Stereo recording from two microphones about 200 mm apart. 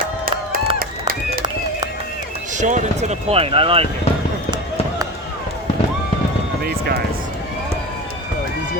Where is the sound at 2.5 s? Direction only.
40° right (ahead or behind).